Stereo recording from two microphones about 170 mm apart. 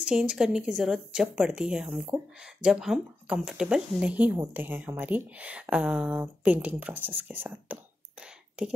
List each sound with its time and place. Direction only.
0.1 s speech: 5° right (ahead or behind)